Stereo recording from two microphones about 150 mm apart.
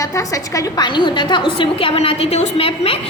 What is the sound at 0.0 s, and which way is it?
A woman's voice, 20° left (ahead or behind).